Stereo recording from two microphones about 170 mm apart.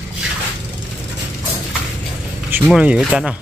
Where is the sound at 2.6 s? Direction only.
5° right (ahead or behind).